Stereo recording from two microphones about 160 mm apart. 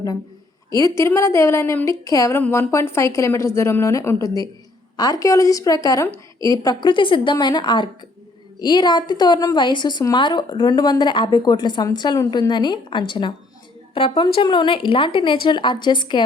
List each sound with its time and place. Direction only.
0.7 s a woman's voice: 20° left (ahead or behind)